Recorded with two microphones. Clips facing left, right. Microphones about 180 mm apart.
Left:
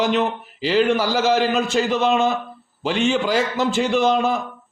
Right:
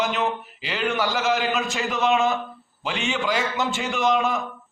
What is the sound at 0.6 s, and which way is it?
Mantra, 40° left (ahead or behind).